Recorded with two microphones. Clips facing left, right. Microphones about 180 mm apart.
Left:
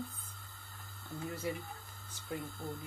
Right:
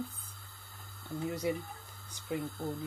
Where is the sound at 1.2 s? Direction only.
15° right (ahead or behind).